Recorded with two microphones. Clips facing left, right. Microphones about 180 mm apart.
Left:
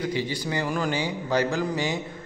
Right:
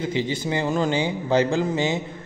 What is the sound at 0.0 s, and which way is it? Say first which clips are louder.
Speech: right 3 dB; 25° right (ahead or behind).